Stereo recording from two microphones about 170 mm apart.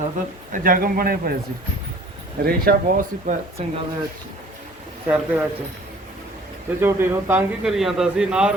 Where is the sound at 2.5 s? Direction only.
55° right (ahead or behind).